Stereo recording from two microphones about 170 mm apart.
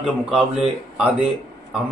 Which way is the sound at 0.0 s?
Centre (ahead or behind).